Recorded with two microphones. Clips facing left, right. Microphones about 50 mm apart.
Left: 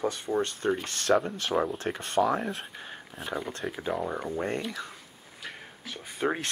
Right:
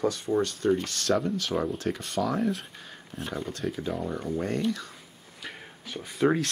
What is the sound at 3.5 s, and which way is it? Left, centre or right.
Speech, left.